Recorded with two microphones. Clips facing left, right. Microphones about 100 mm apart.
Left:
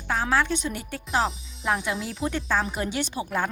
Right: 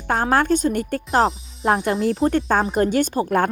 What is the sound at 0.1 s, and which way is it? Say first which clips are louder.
A woman's voice: right 6 dB; 50° right (ahead or behind).